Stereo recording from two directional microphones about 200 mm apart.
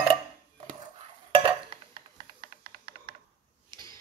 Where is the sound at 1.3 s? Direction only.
25° right (ahead or behind).